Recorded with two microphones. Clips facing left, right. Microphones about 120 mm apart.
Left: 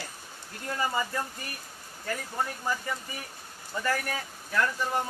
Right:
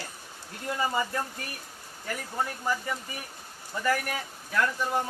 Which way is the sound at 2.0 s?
10° right (ahead or behind).